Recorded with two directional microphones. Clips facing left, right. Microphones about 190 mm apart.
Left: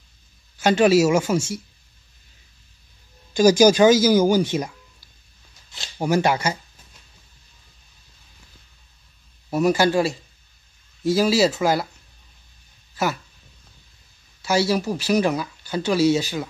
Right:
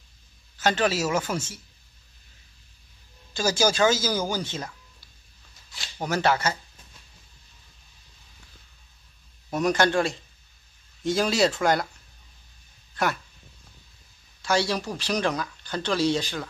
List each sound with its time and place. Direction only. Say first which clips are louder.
0.6 s speech: left 8 dB; 10° left (ahead or behind)
3.3 s speech: left 9 dB; 15° left (ahead or behind)
5.9 s speech: left 4 dB; 10° left (ahead or behind)
9.5 s speech: left 4 dB; 5° left (ahead or behind)
12.9 s speech: left 2 dB; 5° left (ahead or behind)
14.4 s speech: left 4 dB; 5° left (ahead or behind)